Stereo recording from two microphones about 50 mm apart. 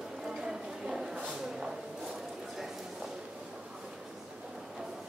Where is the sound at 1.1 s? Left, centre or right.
Right.